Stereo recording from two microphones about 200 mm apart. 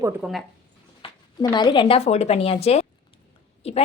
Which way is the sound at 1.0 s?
20° left (ahead or behind).